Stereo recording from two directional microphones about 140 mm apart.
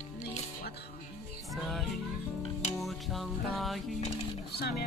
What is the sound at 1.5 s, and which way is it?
Music, centre (ahead or behind).